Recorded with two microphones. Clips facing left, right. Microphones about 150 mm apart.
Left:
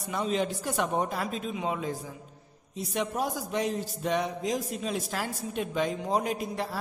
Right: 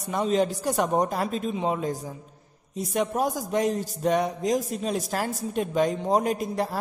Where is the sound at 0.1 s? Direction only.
40° right (ahead or behind).